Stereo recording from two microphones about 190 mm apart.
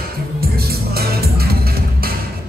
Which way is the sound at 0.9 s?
55° right (ahead or behind).